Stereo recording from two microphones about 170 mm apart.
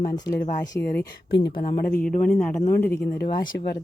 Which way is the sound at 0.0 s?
65° left (ahead or behind).